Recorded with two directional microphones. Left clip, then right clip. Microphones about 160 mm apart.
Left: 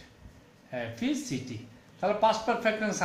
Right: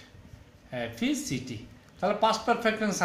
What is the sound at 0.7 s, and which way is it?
Speech, 60° right (ahead or behind).